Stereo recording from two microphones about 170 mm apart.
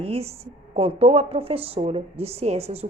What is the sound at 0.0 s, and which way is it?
A woman's voice, 35° right (ahead or behind).